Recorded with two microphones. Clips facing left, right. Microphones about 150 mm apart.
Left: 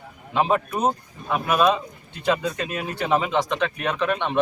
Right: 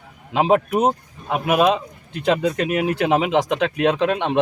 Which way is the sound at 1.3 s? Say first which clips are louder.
Right 3 dB; 65° right (ahead or behind).